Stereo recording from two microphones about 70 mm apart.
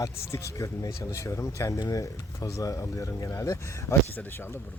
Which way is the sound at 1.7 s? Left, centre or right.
Left.